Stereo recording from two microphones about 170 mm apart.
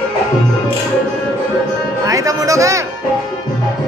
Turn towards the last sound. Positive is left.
turn(degrees=-20)  # may be behind; listen again after turning